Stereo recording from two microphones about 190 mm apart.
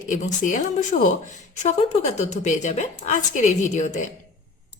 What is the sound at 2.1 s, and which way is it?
A woman's voice, 40° left (ahead or behind).